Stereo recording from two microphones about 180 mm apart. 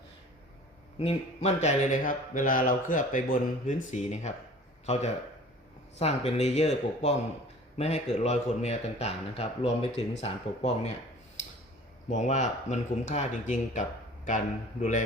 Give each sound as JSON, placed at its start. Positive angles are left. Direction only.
{"t": 0.9, "sound": "speech", "side_deg": 35}
{"t": 12.0, "sound": "speech", "side_deg": 40}